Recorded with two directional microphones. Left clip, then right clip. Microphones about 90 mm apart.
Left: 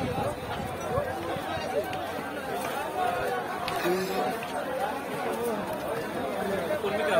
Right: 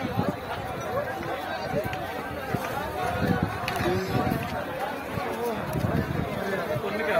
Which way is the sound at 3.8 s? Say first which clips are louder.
Even; 20° right (ahead or behind).